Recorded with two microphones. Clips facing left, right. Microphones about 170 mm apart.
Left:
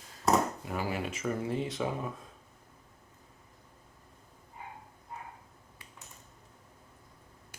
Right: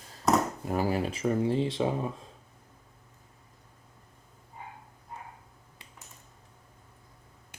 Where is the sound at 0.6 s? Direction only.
40° right (ahead or behind).